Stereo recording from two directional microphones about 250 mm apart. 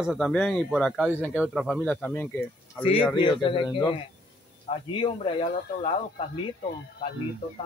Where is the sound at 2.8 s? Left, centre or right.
Left.